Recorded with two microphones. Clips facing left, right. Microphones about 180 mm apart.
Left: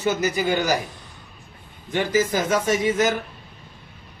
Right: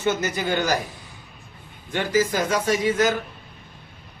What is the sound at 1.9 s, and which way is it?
Speech, 20° left (ahead or behind).